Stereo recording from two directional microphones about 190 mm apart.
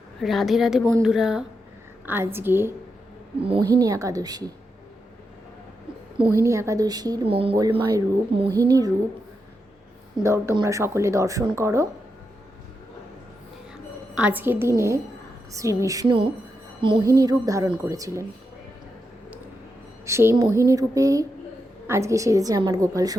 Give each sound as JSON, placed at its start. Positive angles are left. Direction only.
{"t": 0.2, "sound": "a woman's voice", "side_deg": 0}
{"t": 3.4, "sound": "a woman's voice", "side_deg": -30}
{"t": 3.8, "sound": "a woman's voice", "side_deg": -20}
{"t": 6.3, "sound": "a woman's voice", "side_deg": -15}
{"t": 10.2, "sound": "a woman's voice", "side_deg": -15}
{"t": 14.2, "sound": "a woman's voice", "side_deg": -10}
{"t": 20.1, "sound": "a woman's voice", "side_deg": -15}
{"t": 20.5, "sound": "a sound", "side_deg": 15}
{"t": 20.7, "sound": "a woman's voice", "side_deg": -15}